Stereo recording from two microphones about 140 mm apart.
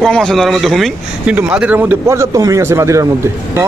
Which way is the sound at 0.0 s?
5° left (ahead or behind).